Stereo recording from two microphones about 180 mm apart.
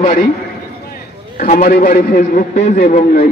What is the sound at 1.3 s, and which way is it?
A man's voice, 40° left (ahead or behind).